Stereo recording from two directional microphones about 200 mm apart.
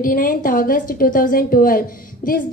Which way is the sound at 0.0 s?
45° left (ahead or behind).